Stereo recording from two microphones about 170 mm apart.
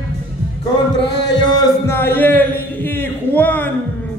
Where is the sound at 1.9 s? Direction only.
15° left (ahead or behind).